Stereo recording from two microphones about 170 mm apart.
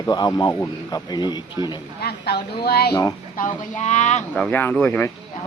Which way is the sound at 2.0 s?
65° left (ahead or behind).